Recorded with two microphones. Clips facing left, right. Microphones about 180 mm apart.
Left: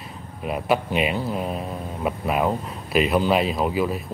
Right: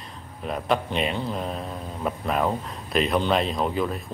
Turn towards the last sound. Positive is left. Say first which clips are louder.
# left 3 dB
turn(degrees=5)  # may be behind; listen again after turning